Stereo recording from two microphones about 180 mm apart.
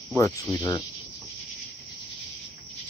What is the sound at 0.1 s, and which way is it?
Speech, 15° left (ahead or behind).